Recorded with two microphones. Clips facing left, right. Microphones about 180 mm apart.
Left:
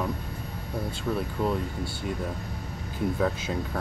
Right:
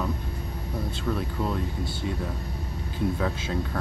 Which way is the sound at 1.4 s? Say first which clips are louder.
Left 4 dB; 10° left (ahead or behind).